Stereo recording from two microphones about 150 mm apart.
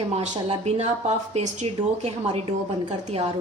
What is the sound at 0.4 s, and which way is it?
Speech, 45° right (ahead or behind).